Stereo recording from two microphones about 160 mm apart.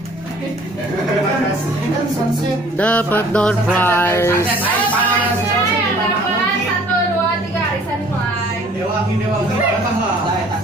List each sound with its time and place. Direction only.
2.8 s speech: 10° left (ahead or behind)